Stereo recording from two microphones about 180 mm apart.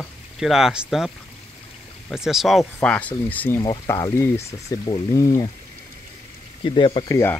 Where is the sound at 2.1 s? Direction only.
Centre (ahead or behind).